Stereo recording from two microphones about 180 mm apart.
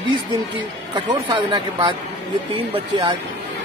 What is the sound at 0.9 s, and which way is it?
Speech, 30° right (ahead or behind).